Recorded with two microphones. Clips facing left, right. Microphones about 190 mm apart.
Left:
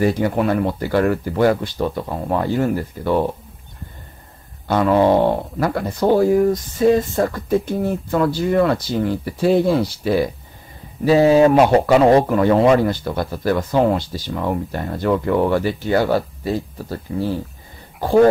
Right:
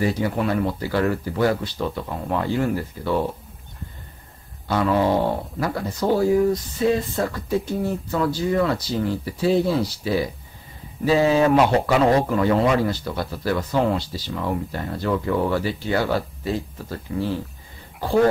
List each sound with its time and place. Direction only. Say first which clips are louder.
0.0 s speech: left 5 dB; 50° left (ahead or behind)
4.6 s speech: left 5 dB; 50° left (ahead or behind)
11.1 s speech: left 5 dB; 35° left (ahead or behind)
11.5 s speech: left 5 dB; 45° left (ahead or behind)